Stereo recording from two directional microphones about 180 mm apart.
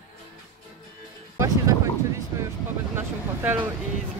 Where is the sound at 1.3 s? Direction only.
15° right (ahead or behind).